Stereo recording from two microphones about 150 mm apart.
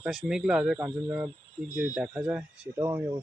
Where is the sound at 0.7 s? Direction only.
20° right (ahead or behind).